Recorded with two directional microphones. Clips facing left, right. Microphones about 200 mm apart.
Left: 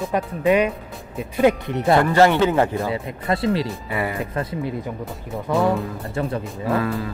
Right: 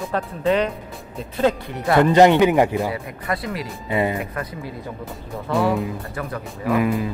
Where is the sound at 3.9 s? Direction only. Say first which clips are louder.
Right 8 dB; 20° right (ahead or behind).